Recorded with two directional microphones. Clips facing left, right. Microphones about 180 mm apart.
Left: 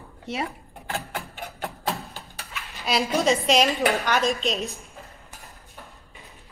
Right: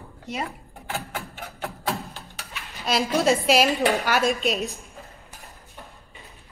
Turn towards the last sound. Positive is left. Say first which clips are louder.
# right 2 dB
turn(degrees=0)  # may be behind; listen again after turning